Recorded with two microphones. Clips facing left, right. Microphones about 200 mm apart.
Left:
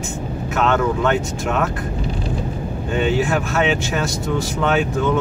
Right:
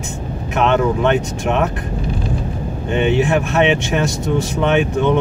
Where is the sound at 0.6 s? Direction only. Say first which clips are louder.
Right 3 dB; 20° right (ahead or behind).